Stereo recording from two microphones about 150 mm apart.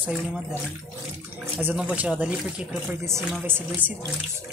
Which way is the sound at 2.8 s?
15° right (ahead or behind).